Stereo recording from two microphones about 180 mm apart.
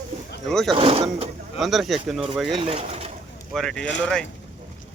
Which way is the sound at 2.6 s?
35° right (ahead or behind).